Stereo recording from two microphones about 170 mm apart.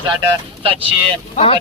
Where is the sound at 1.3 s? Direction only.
35° left (ahead or behind).